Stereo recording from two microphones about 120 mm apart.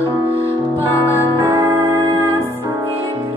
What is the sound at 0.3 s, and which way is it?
Music, 50° right (ahead or behind).